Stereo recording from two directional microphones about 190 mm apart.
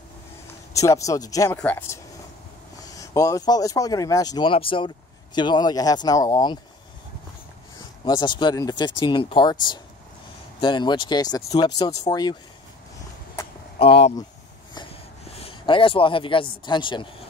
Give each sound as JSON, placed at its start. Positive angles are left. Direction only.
{"t": 0.7, "sound": "speech", "side_deg": 15}
{"t": 8.0, "sound": "speech", "side_deg": 25}
{"t": 14.7, "sound": "a sound", "side_deg": 25}
{"t": 16.6, "sound": "speech", "side_deg": 25}